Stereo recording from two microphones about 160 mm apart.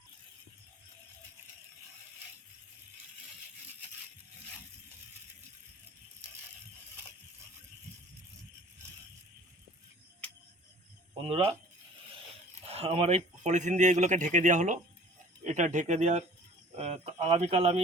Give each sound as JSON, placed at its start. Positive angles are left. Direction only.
{"t": 11.1, "sound": "speech", "side_deg": -35}
{"t": 12.6, "sound": "speech", "side_deg": -40}